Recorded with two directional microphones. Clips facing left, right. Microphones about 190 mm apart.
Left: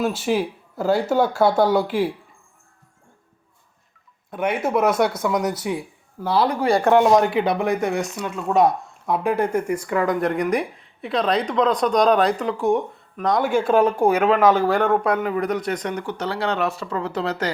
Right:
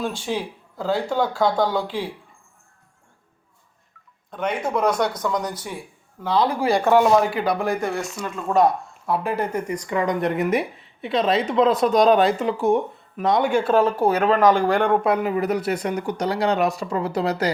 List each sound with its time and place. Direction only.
0.0 s speech: 5° left (ahead or behind)
4.3 s speech: 10° left (ahead or behind)
7.8 s speech: 15° left (ahead or behind)
8.0 s speech: centre (ahead or behind)